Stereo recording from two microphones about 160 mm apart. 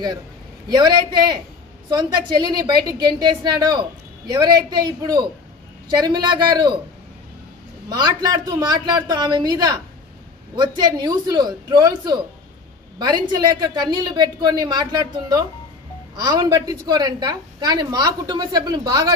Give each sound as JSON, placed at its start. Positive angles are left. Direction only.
{"t": 0.7, "sound": "a woman's voice", "side_deg": -25}
{"t": 7.9, "sound": "a woman's voice", "side_deg": -25}